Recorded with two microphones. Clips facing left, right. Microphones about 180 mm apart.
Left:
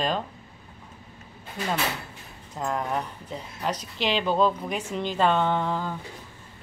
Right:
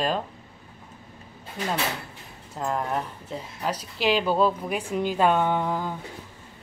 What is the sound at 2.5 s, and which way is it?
Speech, centre (ahead or behind).